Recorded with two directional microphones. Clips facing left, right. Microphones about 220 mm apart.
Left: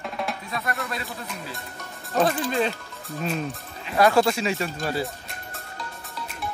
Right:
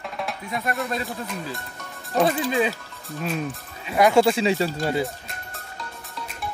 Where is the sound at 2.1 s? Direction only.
Centre (ahead or behind).